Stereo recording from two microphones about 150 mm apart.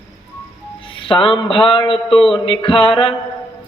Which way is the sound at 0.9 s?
35° left (ahead or behind).